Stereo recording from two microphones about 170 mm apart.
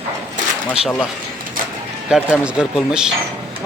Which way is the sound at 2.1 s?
5° right (ahead or behind).